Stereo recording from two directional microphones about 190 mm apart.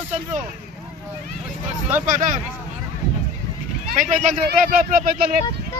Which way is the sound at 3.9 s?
40° right (ahead or behind).